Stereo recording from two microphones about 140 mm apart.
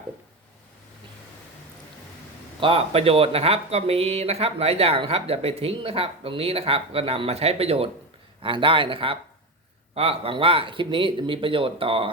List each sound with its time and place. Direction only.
2.6 s speech: 40° right (ahead or behind)